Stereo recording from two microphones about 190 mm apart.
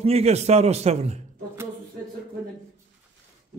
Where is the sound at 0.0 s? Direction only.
35° right (ahead or behind).